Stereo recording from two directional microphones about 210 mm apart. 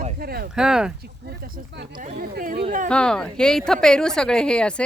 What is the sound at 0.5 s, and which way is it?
Speech, 5° right (ahead or behind).